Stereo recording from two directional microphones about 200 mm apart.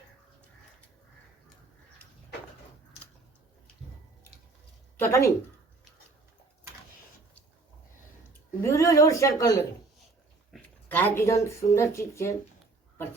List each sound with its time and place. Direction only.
4.9 s speech: 10° left (ahead or behind)
8.6 s a woman's voice: 15° left (ahead or behind)